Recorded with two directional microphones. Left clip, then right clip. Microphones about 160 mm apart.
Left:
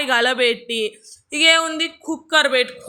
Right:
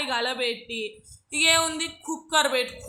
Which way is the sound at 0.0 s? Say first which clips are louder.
Left 9 dB; 30° left (ahead or behind).